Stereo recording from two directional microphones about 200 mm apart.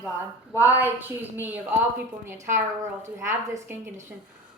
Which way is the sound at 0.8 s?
10° right (ahead or behind).